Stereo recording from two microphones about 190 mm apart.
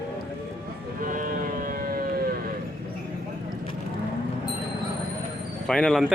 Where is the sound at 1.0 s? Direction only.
45° right (ahead or behind).